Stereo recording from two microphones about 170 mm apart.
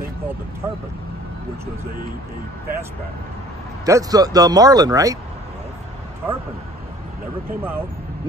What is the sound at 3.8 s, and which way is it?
Speech, 20° right (ahead or behind).